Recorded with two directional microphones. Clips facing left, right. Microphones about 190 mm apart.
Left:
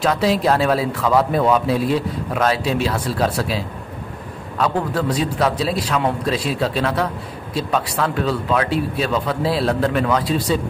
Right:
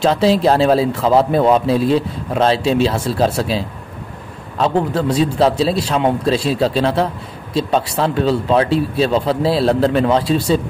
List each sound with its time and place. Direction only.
0.0 s a man's voice: 30° right (ahead or behind)